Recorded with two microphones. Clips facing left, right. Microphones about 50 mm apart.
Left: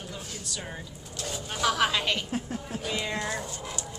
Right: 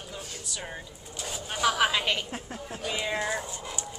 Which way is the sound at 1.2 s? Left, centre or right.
Centre.